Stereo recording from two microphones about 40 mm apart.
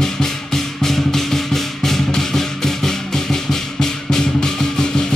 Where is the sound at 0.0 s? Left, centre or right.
Centre.